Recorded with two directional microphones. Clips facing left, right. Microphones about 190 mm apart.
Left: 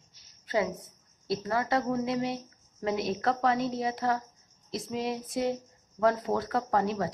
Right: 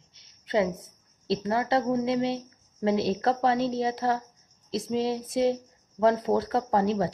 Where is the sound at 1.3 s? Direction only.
25° right (ahead or behind).